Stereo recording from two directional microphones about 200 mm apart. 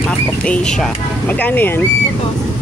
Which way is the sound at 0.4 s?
5° left (ahead or behind).